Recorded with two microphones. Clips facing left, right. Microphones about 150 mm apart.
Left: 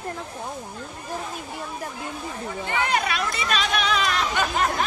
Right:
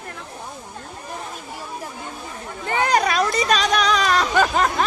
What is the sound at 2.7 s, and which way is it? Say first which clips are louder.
Speech: right 6 dB; 40° right (ahead or behind).